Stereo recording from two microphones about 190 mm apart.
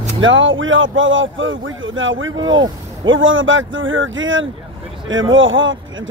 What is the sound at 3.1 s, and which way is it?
Speech, 90° right.